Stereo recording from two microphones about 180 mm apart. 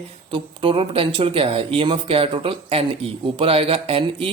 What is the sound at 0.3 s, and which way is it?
Speech, 30° right (ahead or behind).